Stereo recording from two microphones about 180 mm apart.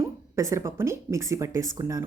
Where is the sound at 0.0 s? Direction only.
15° right (ahead or behind).